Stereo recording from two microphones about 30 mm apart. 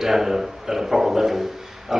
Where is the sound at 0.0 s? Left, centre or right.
Centre.